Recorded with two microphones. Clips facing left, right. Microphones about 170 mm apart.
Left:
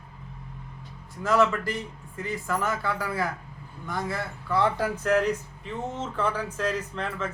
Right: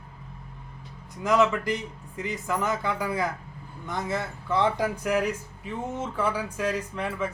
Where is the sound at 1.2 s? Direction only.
15° right (ahead or behind).